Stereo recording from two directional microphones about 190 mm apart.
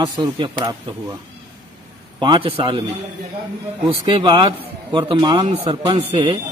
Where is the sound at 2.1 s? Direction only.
25° right (ahead or behind).